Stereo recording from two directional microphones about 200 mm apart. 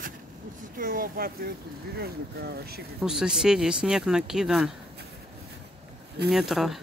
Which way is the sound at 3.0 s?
5° right (ahead or behind).